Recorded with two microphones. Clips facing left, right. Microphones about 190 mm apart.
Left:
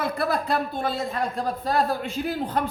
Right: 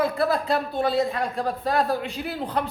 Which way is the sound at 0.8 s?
45° left (ahead or behind).